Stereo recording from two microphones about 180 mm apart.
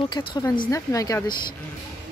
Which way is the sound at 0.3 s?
20° left (ahead or behind).